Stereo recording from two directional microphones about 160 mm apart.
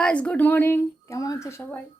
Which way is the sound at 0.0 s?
5° left (ahead or behind).